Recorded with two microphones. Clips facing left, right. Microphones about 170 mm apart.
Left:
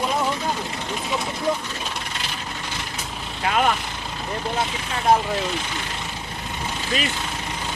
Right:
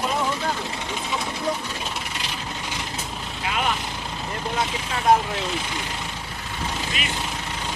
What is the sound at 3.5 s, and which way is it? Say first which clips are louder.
Vehicle: left 5 dB; 50° left (ahead or behind).